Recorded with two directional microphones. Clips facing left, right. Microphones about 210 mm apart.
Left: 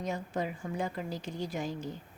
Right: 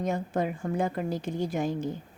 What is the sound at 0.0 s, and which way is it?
A woman's voice, 55° right (ahead or behind).